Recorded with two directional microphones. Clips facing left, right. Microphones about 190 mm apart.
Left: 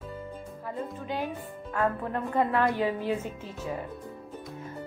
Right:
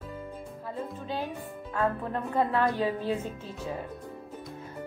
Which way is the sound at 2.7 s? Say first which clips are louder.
Left 1 dB; 15° left (ahead or behind).